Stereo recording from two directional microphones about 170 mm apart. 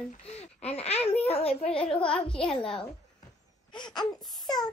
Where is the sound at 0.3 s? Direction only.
40° left (ahead or behind).